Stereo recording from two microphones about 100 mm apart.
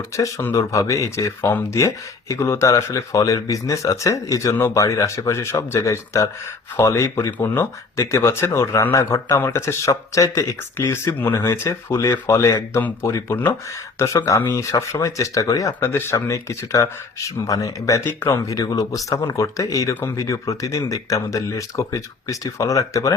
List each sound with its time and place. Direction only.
0.2 s speech: 35° left (ahead or behind)
13.3 s speech: 20° left (ahead or behind)
15.9 s speech: 25° left (ahead or behind)